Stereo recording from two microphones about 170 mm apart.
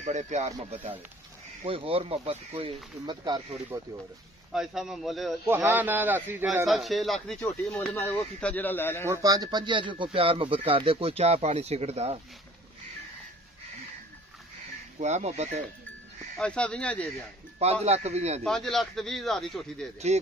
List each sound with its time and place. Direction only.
0.0 s speech: 45° right (ahead or behind); by 3.8 s 25° right (ahead or behind)
4.5 s speech: centre (ahead or behind)
5.4 s speech: 10° right (ahead or behind)
6.4 s speech: centre (ahead or behind)
9.0 s speech: 20° right (ahead or behind); by 12.2 s 40° right (ahead or behind)
15.0 s speech: 40° right (ahead or behind)
16.3 s speech: 5° left (ahead or behind)
17.8 s speech: 40° right (ahead or behind)
18.4 s speech: 5° left (ahead or behind)
20.1 s speech: 40° right (ahead or behind)